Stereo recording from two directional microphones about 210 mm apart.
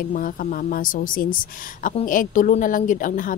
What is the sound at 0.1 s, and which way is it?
A woman's voice, 40° left (ahead or behind).